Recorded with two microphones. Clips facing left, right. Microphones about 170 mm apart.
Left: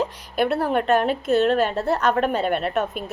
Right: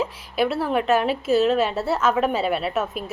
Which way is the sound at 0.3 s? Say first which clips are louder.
Left 1 dB; 55° left (ahead or behind).